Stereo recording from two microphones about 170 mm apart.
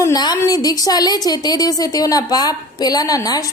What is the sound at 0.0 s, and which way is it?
A woman's voice, 25° left (ahead or behind).